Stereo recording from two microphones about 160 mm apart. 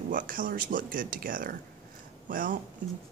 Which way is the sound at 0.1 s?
60° right (ahead or behind).